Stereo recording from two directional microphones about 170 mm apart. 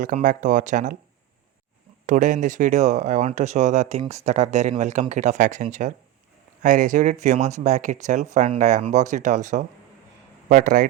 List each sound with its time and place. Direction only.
0.0 s speech: 50° right (ahead or behind)
2.0 s speech: 50° right (ahead or behind)